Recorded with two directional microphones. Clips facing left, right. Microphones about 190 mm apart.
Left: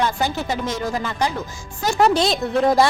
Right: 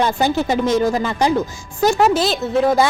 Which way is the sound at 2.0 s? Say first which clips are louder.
Right 1 dB; 5° right (ahead or behind).